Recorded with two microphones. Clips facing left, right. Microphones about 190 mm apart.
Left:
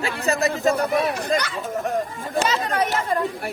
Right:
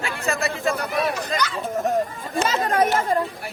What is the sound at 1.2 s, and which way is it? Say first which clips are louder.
Speech: left 3 dB; 55° left (ahead or behind).